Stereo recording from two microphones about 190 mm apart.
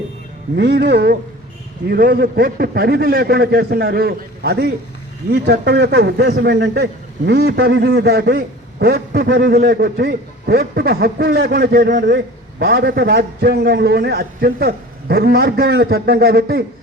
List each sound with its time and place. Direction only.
0.5 s a man's voice: 65° right (ahead or behind)